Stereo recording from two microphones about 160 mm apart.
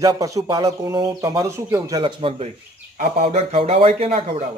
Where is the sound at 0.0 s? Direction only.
20° right (ahead or behind); by 4.5 s 40° right (ahead or behind).